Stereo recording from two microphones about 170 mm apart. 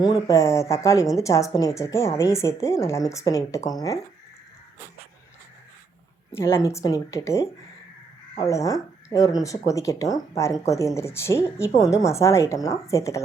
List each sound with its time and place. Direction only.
0.0 s speech: 20° left (ahead or behind)
6.3 s speech: 15° left (ahead or behind)